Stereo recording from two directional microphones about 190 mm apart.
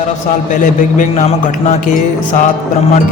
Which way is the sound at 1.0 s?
35° left (ahead or behind).